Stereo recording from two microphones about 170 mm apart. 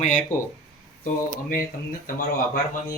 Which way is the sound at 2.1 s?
50° left (ahead or behind).